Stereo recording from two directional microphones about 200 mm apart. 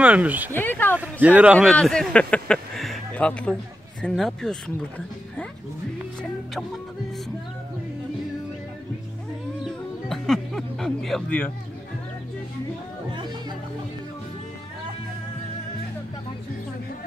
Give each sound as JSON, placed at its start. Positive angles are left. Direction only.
{"t": 0.0, "sound": "speech", "side_deg": -5}
{"t": 0.5, "sound": "speech", "side_deg": 10}
{"t": 0.9, "sound": "speech", "side_deg": -10}
{"t": 1.7, "sound": "speech", "side_deg": 5}
{"t": 9.7, "sound": "music", "side_deg": 0}